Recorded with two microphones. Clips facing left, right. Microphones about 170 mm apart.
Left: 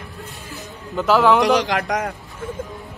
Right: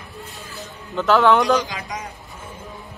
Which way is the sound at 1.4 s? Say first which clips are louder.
Left 3 dB; 85° left.